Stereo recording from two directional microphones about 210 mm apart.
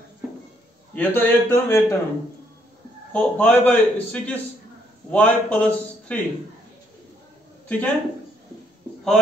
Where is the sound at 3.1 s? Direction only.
5° left (ahead or behind).